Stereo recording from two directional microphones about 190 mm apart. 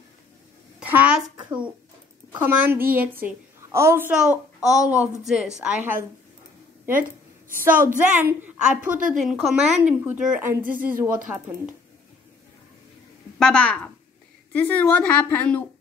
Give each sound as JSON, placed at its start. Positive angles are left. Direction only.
{"t": 0.7, "sound": "a sound", "side_deg": -10}
{"t": 2.3, "sound": "a woman's voice", "side_deg": -10}
{"t": 7.0, "sound": "a sound", "side_deg": -45}
{"t": 7.7, "sound": "a woman's voice", "side_deg": -45}
{"t": 8.0, "sound": "a woman's voice", "side_deg": -10}
{"t": 10.6, "sound": "a woman's voice", "side_deg": -45}
{"t": 11.3, "sound": "a woman's voice", "side_deg": -10}
{"t": 13.4, "sound": "a woman's voice", "side_deg": 5}